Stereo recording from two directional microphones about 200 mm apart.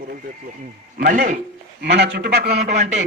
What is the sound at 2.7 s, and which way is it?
Speech, 35° right (ahead or behind).